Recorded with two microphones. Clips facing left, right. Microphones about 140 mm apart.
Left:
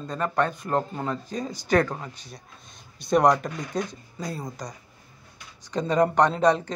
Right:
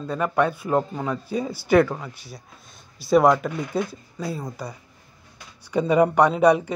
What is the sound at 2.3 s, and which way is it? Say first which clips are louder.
Speech: right 2 dB; 5° right (ahead or behind).